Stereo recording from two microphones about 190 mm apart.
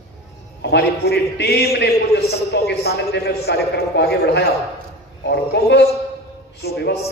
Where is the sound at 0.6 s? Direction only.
60° left (ahead or behind).